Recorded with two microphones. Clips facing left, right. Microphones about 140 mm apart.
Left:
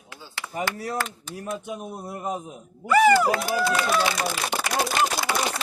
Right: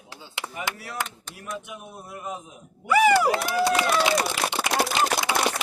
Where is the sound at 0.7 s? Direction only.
40° left (ahead or behind).